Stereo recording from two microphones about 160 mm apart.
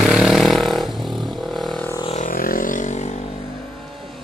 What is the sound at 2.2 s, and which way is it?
Vehicle, 60° left (ahead or behind).